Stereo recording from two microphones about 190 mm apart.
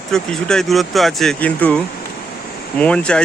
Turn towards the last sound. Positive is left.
turn(degrees=5)  # may be behind; listen again after turning